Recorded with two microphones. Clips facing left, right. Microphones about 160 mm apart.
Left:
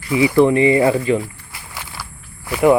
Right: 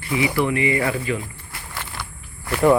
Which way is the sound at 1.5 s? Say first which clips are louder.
Even; 10° left (ahead or behind).